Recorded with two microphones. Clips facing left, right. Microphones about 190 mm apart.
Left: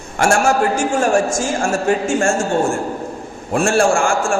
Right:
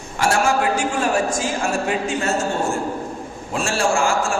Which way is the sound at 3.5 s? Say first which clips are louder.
Left 6 dB; 50° left (ahead or behind).